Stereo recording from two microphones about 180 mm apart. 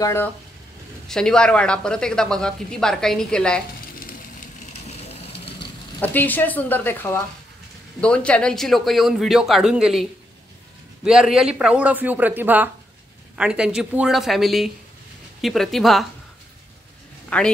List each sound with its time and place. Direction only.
0.0 s speech: 15° left (ahead or behind)
1.0 s speech: 5° left (ahead or behind)
4.8 s vehicle: 35° left (ahead or behind)
5.9 s speech: 10° left (ahead or behind)
11.1 s speech: 5° right (ahead or behind)
17.3 s speech: 10° left (ahead or behind)